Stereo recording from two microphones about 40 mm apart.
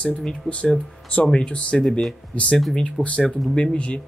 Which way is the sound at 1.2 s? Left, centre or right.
Left.